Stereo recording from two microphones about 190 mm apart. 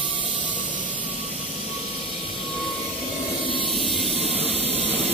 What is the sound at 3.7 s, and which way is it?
Vehicle, centre (ahead or behind).